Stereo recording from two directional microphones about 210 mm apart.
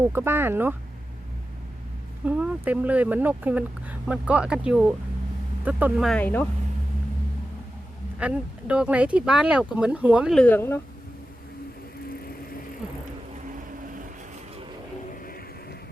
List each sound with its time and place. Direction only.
0.0 s speech: 10° right (ahead or behind)
2.2 s speech: 5° right (ahead or behind)
8.2 s speech: 5° right (ahead or behind)
10.4 s speech: 10° left (ahead or behind)
13.4 s vehicle: 40° right (ahead or behind)
15.1 s a sound: 40° left (ahead or behind)